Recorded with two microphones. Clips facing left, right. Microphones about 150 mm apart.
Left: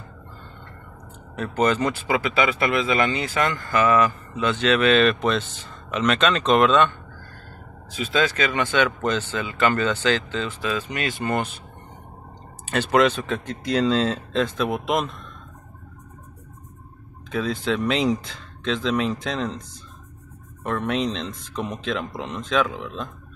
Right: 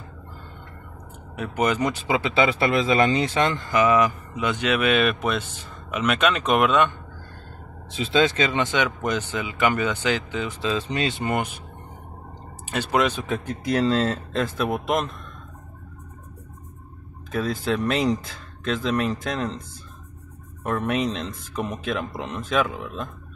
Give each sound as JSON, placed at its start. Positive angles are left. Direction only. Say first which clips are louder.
{"t": 1.3, "sound": "speech", "louder": "left 2 dB", "side_deg": -10}
{"t": 7.9, "sound": "speech", "louder": "right 2 dB", "side_deg": -25}
{"t": 12.6, "sound": "speech", "louder": "left 4 dB", "side_deg": -10}
{"t": 17.3, "sound": "speech", "louder": "even", "side_deg": 0}
{"t": 20.6, "sound": "speech", "louder": "even", "side_deg": 0}